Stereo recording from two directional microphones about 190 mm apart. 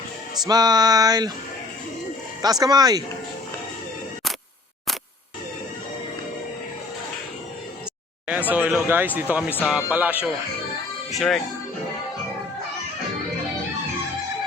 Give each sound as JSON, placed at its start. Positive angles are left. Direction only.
{"t": 0.4, "sound": "music", "side_deg": -20}
{"t": 2.4, "sound": "music", "side_deg": -20}
{"t": 8.4, "sound": "speech", "side_deg": -10}